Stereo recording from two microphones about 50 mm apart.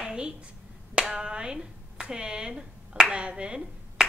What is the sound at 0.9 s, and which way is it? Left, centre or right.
Speech, centre.